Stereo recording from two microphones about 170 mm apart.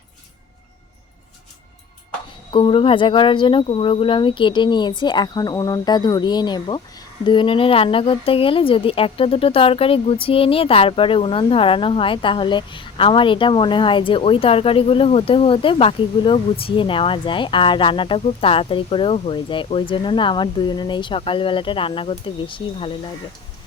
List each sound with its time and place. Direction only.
2.5 s a woman's voice: 30° left (ahead or behind)